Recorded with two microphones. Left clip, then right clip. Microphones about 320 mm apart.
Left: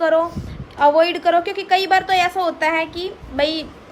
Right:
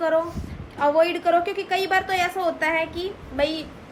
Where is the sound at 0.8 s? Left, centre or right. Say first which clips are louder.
Left 5 dB; left.